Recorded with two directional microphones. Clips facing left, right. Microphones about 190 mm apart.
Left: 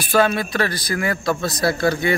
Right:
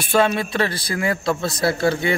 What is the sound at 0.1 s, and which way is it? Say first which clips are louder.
Speech: even; 25° right (ahead or behind).